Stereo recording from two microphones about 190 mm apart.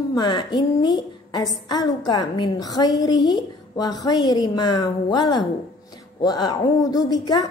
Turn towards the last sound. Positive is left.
turn(degrees=20)  # may be behind; listen again after turning